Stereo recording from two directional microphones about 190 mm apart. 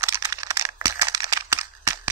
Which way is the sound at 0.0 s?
15° right (ahead or behind).